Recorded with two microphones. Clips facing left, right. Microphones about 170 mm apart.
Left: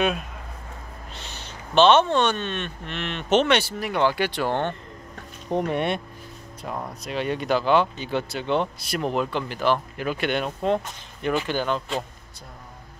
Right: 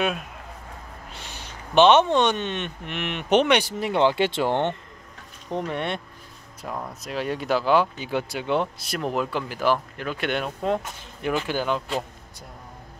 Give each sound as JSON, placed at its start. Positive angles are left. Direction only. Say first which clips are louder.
{"t": 1.1, "sound": "speech", "louder": "left 1 dB", "side_deg": -10}
{"t": 5.5, "sound": "speech", "louder": "left 4 dB", "side_deg": 15}
{"t": 6.7, "sound": "speech", "louder": "left 1 dB", "side_deg": 0}
{"t": 9.9, "sound": "speech", "louder": "left 2 dB", "side_deg": 5}